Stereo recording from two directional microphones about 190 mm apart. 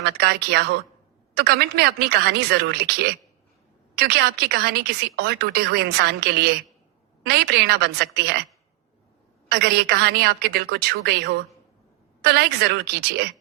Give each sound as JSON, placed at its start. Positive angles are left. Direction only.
{"t": 0.2, "sound": "speech", "side_deg": -60}
{"t": 9.5, "sound": "speech", "side_deg": -60}